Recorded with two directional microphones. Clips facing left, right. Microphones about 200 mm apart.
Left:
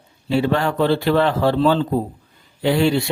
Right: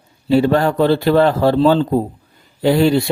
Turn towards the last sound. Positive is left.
turn(degrees=-40)  # may be behind; listen again after turning